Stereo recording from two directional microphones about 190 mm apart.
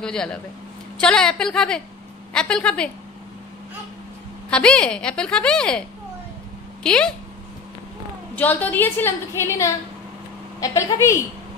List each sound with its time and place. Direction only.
0.0 s a woman's voice: 5° left (ahead or behind)
4.5 s a woman's voice: 5° left (ahead or behind)
8.4 s a woman's voice: 10° left (ahead or behind)